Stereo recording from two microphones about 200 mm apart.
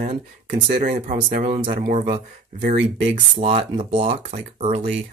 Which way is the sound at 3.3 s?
30° right (ahead or behind).